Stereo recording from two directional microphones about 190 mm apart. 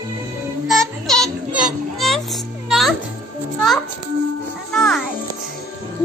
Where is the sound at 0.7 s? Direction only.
Centre (ahead or behind).